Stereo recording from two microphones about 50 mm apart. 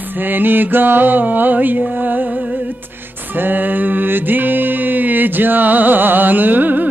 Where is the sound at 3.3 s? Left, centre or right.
Right.